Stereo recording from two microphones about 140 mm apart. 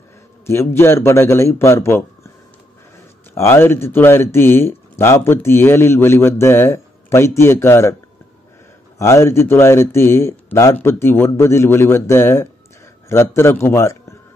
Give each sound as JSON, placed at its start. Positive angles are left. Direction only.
{"t": 0.5, "sound": "speech", "side_deg": 15}
{"t": 3.3, "sound": "speech", "side_deg": 20}
{"t": 8.9, "sound": "speech", "side_deg": 20}